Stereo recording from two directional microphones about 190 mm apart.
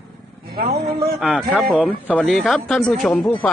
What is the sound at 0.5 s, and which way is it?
Speech, 55° right (ahead or behind).